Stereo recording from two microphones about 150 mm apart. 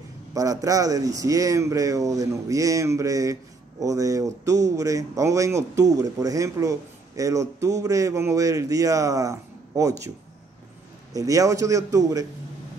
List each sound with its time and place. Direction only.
0.3 s speech: 20° right (ahead or behind)
11.1 s speech: 20° right (ahead or behind)